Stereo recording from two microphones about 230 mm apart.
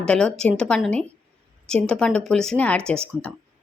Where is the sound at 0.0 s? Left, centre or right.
Centre.